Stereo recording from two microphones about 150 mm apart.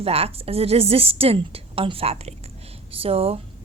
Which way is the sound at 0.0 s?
40° right (ahead or behind).